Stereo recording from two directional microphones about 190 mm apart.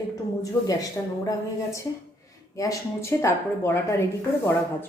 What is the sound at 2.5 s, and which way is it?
Speech, 15° left (ahead or behind).